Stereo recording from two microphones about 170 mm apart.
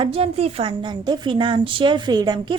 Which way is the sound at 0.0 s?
35° right (ahead or behind).